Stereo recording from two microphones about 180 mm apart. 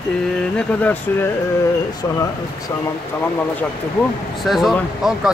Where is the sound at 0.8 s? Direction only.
10° left (ahead or behind).